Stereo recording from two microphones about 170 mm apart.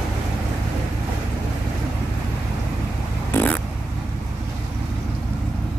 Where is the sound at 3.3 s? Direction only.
10° left (ahead or behind).